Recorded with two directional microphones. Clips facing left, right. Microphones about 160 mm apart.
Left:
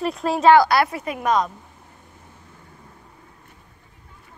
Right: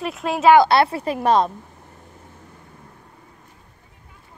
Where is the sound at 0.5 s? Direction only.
25° right (ahead or behind).